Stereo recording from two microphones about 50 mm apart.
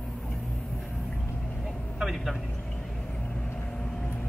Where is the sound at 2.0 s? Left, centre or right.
Centre.